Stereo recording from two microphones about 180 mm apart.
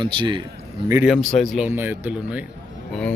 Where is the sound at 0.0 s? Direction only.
25° right (ahead or behind).